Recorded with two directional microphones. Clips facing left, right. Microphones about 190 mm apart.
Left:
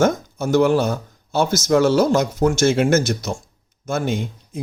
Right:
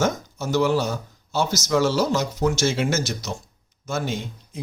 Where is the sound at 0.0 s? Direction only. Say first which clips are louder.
Left 6 dB; 55° left (ahead or behind).